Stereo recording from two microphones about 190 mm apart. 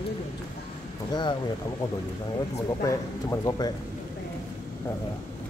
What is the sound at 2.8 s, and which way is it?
Speech, 15° left (ahead or behind).